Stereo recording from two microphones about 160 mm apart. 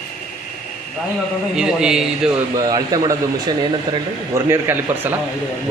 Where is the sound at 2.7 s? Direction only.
25° right (ahead or behind).